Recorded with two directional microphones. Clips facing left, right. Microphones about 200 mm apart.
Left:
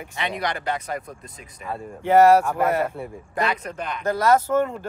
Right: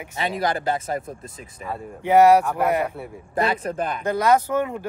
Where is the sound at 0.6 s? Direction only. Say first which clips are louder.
Right 3 dB; 30° right (ahead or behind).